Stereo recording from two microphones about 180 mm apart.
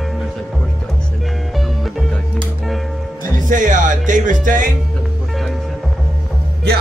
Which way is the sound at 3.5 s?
45° right (ahead or behind).